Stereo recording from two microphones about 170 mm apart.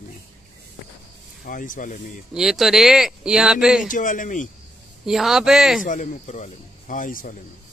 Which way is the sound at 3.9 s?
50° left (ahead or behind).